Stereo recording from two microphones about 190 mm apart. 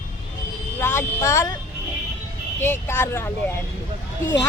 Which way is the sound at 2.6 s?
10° left (ahead or behind).